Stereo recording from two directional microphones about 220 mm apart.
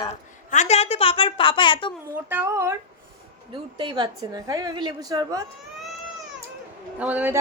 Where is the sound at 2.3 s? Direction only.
10° right (ahead or behind).